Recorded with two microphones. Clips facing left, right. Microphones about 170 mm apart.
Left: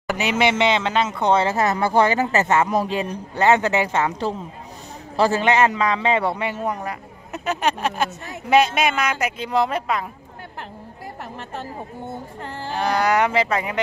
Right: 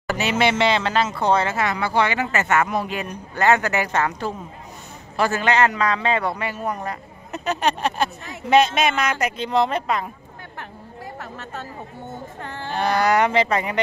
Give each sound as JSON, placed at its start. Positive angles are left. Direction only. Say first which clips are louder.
{"t": 0.0, "sound": "speech", "louder": "even", "side_deg": 15}
{"t": 5.1, "sound": "speech", "louder": "left 2 dB", "side_deg": 30}
{"t": 6.8, "sound": "speech", "louder": "even", "side_deg": 10}
{"t": 12.4, "sound": "speech", "louder": "left 1 dB", "side_deg": 35}
{"t": 12.7, "sound": "speech", "louder": "right 1 dB", "side_deg": 10}